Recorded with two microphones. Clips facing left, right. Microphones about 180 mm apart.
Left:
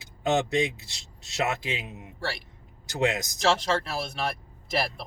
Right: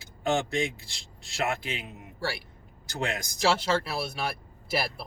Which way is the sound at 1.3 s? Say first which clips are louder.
Left 2 dB; 20° left (ahead or behind).